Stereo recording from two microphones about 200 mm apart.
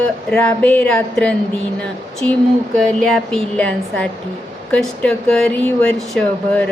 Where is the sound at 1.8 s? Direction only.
5° left (ahead or behind).